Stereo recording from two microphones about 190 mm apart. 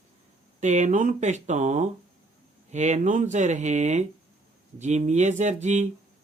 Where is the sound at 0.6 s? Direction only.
40° right (ahead or behind).